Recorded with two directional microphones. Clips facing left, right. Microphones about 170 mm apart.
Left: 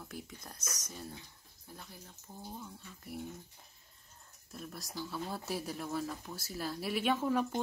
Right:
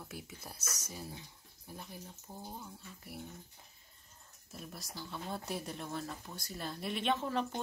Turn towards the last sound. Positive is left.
turn(degrees=10)  # may be behind; listen again after turning